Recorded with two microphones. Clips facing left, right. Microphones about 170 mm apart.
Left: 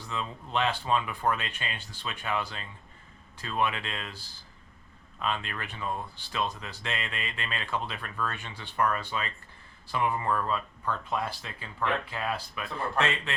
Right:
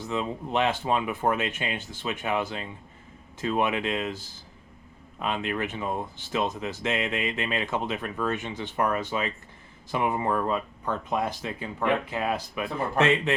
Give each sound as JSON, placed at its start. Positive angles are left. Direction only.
{"t": 0.0, "sound": "speech", "side_deg": -20}
{"t": 5.2, "sound": "speech", "side_deg": -20}